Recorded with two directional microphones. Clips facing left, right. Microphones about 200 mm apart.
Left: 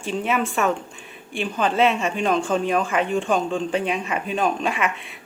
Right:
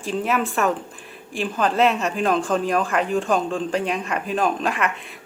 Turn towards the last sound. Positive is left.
turn(degrees=0)  # may be behind; listen again after turning